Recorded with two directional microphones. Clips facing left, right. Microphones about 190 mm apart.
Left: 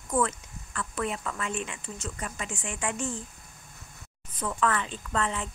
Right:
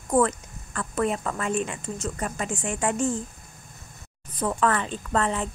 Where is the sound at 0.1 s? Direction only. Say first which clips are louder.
Right 6 dB; 45° right (ahead or behind).